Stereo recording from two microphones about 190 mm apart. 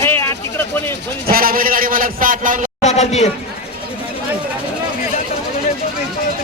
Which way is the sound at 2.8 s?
35° left (ahead or behind).